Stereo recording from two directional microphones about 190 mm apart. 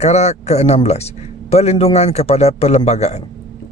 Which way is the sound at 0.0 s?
35° left (ahead or behind).